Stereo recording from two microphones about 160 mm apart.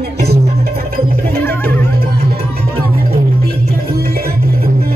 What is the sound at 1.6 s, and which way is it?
Music, 75° right (ahead or behind).